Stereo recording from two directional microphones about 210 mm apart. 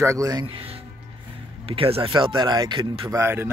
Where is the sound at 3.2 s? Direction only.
10° right (ahead or behind).